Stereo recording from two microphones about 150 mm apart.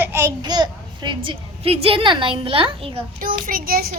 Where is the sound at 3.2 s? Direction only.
65° right (ahead or behind); by 4.0 s 85° right.